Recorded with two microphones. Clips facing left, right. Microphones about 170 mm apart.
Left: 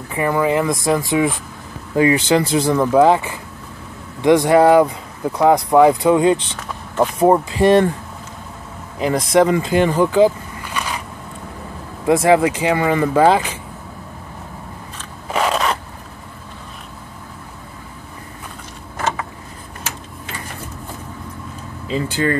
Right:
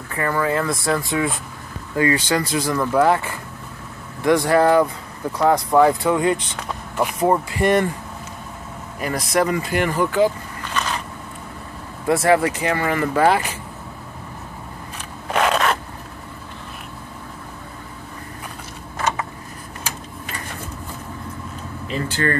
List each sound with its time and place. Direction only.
0.1 s speech: 15° left (ahead or behind)
9.0 s speech: 20° left (ahead or behind)
12.1 s speech: 15° left (ahead or behind)
15.2 s scrape: 5° left (ahead or behind)
21.9 s speech: 15° left (ahead or behind)